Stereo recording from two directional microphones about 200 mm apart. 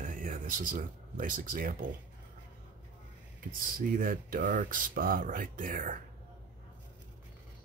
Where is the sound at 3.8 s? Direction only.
45° right (ahead or behind).